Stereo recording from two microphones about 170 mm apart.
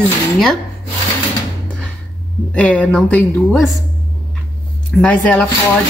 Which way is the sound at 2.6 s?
5° left (ahead or behind).